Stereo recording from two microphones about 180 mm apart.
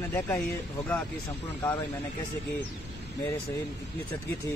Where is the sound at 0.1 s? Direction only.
10° left (ahead or behind).